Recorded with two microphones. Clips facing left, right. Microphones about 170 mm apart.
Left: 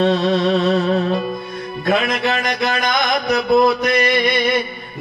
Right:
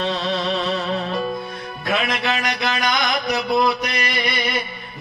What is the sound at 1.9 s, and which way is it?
Music, 45° left (ahead or behind).